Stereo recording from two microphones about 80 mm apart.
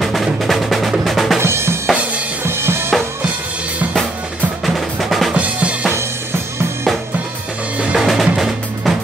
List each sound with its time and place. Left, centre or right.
0.0 s music: centre
1.0 s drum: centre
1.4 s drum: right
2.4 s drum kit: right
4.6 s music: centre
5.3 s drum kit: centre
7.8 s drum: centre